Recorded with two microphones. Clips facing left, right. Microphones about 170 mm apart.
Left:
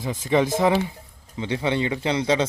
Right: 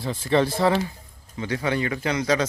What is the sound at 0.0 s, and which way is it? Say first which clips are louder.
A man's voice: even; 10° left (ahead or behind).